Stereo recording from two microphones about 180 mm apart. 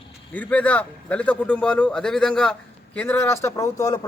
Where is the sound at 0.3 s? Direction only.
10° left (ahead or behind).